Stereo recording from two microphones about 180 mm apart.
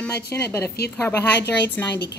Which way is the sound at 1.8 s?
10° left (ahead or behind).